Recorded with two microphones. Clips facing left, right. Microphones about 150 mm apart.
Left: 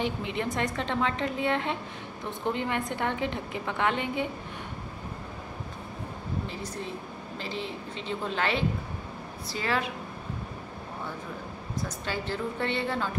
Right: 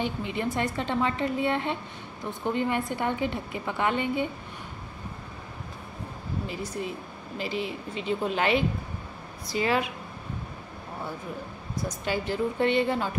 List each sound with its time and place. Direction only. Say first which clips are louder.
0.0 s a woman's voice: right 1 dB; centre (ahead or behind)
6.4 s a woman's voice: right 3 dB; 10° right (ahead or behind)
12.0 s a woman's voice: right 6 dB; 15° right (ahead or behind)